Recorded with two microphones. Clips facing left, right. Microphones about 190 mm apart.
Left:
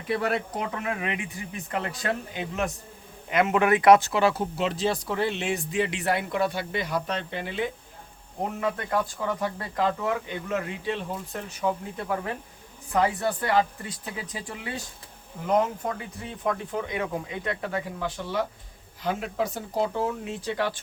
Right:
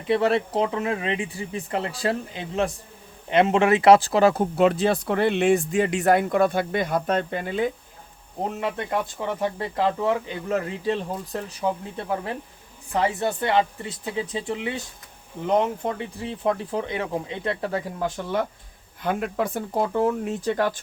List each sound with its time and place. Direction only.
0.1 s speech: 25° right (ahead or behind); by 7.7 s 45° right (ahead or behind)
8.6 s speech: 25° right (ahead or behind)
19.0 s speech: 55° right (ahead or behind)